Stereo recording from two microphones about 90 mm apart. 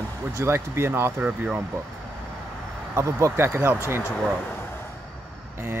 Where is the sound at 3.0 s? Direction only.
30° right (ahead or behind).